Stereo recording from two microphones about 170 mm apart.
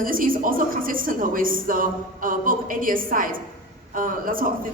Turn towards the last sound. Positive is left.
turn(degrees=-55)  # may be behind; listen again after turning